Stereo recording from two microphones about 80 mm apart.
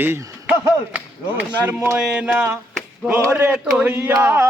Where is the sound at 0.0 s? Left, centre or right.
Right.